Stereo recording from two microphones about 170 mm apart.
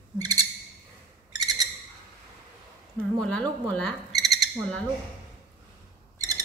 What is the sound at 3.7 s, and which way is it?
Owl, 10° left (ahead or behind).